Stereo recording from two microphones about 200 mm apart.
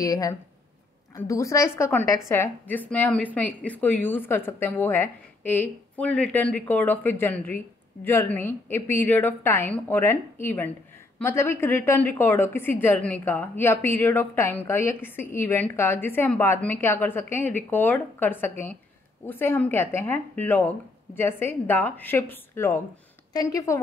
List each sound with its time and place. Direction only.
0.0 s a woman's voice: 20° left (ahead or behind)